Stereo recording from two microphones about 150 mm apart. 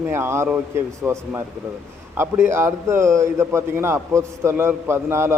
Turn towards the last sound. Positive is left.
turn(degrees=-15)  # may be behind; listen again after turning